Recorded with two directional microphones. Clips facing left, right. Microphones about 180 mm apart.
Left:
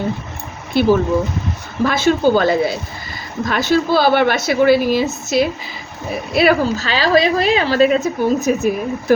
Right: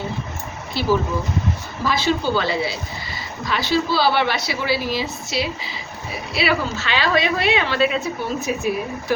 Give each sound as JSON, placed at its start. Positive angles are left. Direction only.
{"t": 0.7, "sound": "speech", "side_deg": 55}